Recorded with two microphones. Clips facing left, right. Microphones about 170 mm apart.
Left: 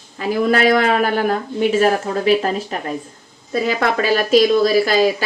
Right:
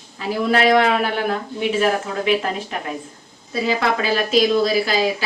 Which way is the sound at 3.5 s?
50° left (ahead or behind).